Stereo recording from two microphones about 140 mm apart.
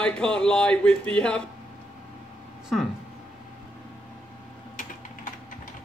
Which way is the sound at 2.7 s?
Centre (ahead or behind).